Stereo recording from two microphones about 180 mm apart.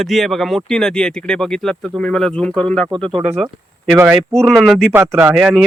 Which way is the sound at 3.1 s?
35° right (ahead or behind).